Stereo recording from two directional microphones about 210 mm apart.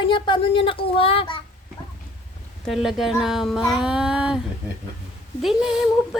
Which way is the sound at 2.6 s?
Centre (ahead or behind).